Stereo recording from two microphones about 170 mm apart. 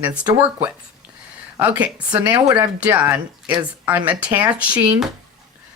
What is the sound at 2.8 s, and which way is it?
Speech, 10° right (ahead or behind).